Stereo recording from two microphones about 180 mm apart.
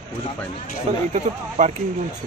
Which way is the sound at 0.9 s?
40° right (ahead or behind).